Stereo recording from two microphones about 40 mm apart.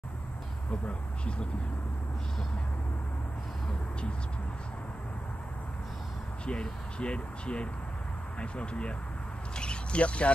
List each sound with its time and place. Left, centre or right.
0.7 s speech: left
6.4 s speech: left
9.6 s a sound: left